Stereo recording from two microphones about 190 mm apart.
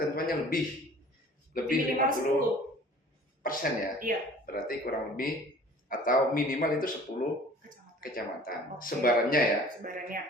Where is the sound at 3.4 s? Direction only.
50° left (ahead or behind).